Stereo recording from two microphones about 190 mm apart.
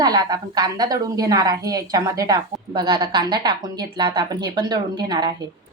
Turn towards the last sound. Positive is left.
turn(degrees=-20)  # may be behind; listen again after turning